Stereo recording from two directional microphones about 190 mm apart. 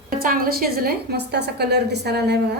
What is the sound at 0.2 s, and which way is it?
A woman's voice, 50° right (ahead or behind).